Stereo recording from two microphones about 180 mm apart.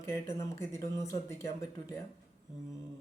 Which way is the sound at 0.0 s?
15° left (ahead or behind).